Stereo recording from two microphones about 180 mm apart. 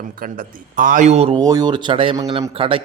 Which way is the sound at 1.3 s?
20° right (ahead or behind).